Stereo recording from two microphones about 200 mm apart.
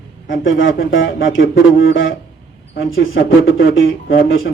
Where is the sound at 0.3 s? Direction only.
70° left (ahead or behind).